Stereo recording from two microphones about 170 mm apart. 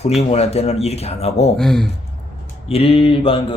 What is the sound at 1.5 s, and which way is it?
Speech, centre (ahead or behind).